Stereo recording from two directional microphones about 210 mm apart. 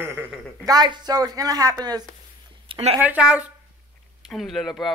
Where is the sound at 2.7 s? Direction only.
30° right (ahead or behind).